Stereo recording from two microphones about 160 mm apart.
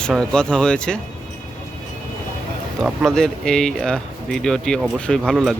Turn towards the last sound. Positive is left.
turn(degrees=0)  # may be behind; listen again after turning